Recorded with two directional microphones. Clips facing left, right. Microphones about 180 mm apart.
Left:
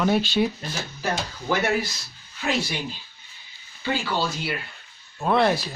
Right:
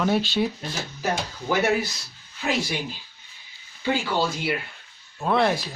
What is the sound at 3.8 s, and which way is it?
Speech, 15° right (ahead or behind).